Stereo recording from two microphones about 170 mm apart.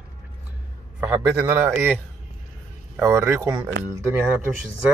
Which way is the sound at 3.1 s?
15° right (ahead or behind).